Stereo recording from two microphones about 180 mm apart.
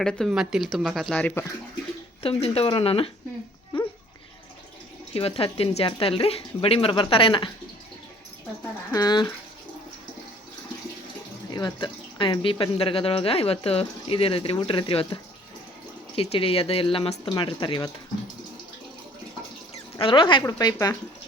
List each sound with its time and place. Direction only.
0.0 s speech: centre (ahead or behind)
2.2 s speech: 35° left (ahead or behind)
3.7 s dog: 30° left (ahead or behind)
5.1 s speech: 30° left (ahead or behind)
8.9 s a woman's voice: 20° left (ahead or behind)
11.5 s speech: 25° left (ahead or behind)
20.0 s a woman's voice: 30° left (ahead or behind)